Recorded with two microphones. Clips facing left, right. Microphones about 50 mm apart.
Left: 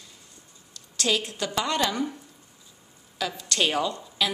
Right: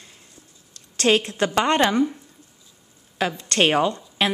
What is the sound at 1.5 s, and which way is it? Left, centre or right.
Speech, right.